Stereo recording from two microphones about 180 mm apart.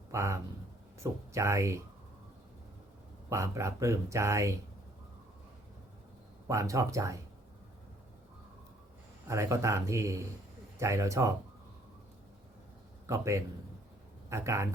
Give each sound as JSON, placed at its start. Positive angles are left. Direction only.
{"t": 0.1, "sound": "speech", "side_deg": -15}
{"t": 3.2, "sound": "speech", "side_deg": -15}
{"t": 6.5, "sound": "speech", "side_deg": -15}
{"t": 9.2, "sound": "speech", "side_deg": -15}
{"t": 13.1, "sound": "speech", "side_deg": -15}